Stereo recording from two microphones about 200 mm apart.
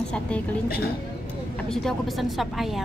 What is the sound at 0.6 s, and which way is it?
Speech, 50° left (ahead or behind).